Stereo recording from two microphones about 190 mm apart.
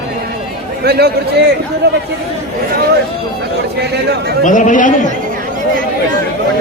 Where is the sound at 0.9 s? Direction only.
60° right (ahead or behind).